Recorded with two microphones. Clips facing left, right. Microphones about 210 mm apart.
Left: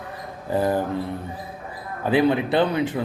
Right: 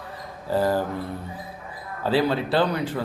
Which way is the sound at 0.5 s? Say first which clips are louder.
Even; 20° left (ahead or behind).